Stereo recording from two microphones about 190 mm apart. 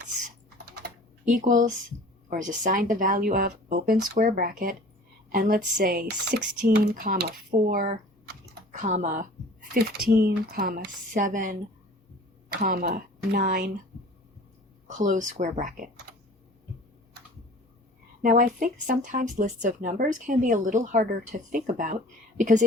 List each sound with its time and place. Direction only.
0.8 s typing: 45° right (ahead or behind)
2.3 s speech: 45° right (ahead or behind)
7.7 s typing: 50° right (ahead or behind)
9.7 s speech: 50° right (ahead or behind)
12.6 s speech: 50° right (ahead or behind)
14.8 s speech: 40° right (ahead or behind)
18.2 s speech: 45° right (ahead or behind)